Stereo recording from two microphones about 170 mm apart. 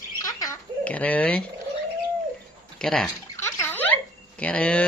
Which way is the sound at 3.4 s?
15° left (ahead or behind).